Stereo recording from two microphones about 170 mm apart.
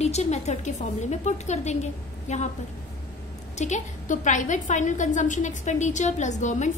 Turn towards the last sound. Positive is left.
turn(degrees=45)  # may be behind; listen again after turning